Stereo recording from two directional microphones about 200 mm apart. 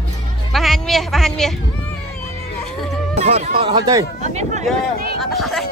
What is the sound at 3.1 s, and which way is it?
Music, 30° right (ahead or behind).